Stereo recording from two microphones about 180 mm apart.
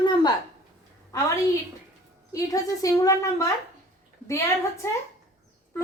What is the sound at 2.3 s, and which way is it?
A woman's voice, 20° left (ahead or behind).